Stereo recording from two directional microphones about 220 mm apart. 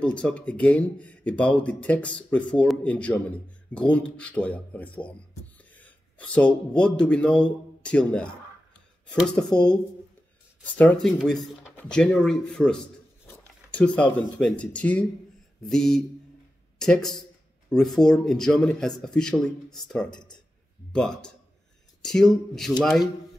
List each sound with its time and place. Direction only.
0.0 s speech: 5° left (ahead or behind)
20.1 s speech: 20° left (ahead or behind)
20.9 s speech: 5° left (ahead or behind)